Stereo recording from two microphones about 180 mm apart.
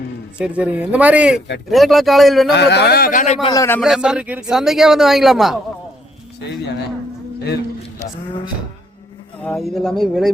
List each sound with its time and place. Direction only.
0.3 s a man's voice: 5° right (ahead or behind)
2.5 s speech: 70° left (ahead or behind); by 3.3 s 45° left (ahead or behind)
3.4 s a man's voice: 20° left (ahead or behind)
3.8 s a man's voice: centre (ahead or behind)
6.4 s speech: 70° left (ahead or behind)
9.4 s a man's voice: 5° left (ahead or behind)